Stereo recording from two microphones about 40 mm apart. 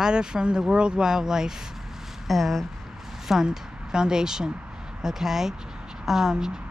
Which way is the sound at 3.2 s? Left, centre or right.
Centre.